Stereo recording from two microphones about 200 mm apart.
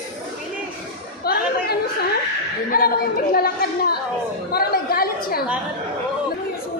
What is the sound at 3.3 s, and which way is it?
A woman's voice, 50° left (ahead or behind).